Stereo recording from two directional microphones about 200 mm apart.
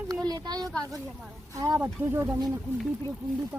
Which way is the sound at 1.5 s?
15° right (ahead or behind).